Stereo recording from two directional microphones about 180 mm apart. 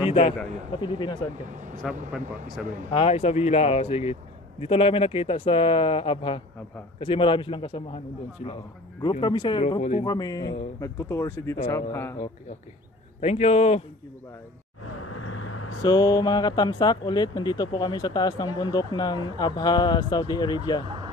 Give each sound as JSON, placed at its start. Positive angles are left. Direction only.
{"t": 0.0, "sound": "a sound", "side_deg": 30}
{"t": 0.7, "sound": "speech", "side_deg": 25}
{"t": 1.3, "sound": "speech", "side_deg": -45}
{"t": 2.9, "sound": "a man's voice", "side_deg": 30}
{"t": 9.2, "sound": "speech", "side_deg": 25}
{"t": 10.0, "sound": "speech", "side_deg": 20}
{"t": 13.2, "sound": "a man's voice", "side_deg": 35}
{"t": 15.8, "sound": "speech", "side_deg": 20}